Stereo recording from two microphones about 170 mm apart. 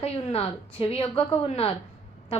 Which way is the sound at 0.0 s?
35° left (ahead or behind).